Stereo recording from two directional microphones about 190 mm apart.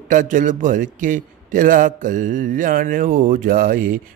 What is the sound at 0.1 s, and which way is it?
A man's voice, 40° right (ahead or behind).